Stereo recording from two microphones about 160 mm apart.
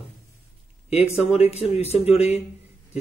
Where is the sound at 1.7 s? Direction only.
40° left (ahead or behind).